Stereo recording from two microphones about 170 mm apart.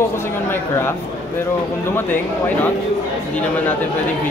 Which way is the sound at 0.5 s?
15° left (ahead or behind).